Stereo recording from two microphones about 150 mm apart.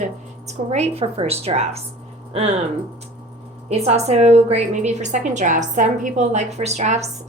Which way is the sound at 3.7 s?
45° right (ahead or behind).